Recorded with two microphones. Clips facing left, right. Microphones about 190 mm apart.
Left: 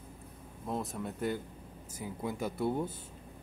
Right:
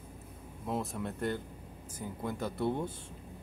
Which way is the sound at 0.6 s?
Centre (ahead or behind).